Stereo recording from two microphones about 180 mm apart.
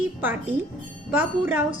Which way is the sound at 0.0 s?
10° right (ahead or behind).